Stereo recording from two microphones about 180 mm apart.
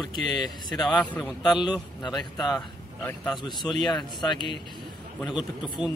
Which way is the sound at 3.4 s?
25° left (ahead or behind).